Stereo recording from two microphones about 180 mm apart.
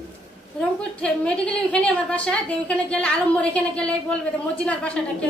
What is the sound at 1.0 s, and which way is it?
A woman's voice, 5° left (ahead or behind).